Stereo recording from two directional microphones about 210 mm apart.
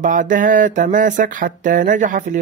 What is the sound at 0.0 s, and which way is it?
Speech, 40° right (ahead or behind).